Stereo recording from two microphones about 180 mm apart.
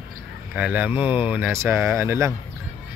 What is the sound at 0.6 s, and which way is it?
Speech, 10° right (ahead or behind).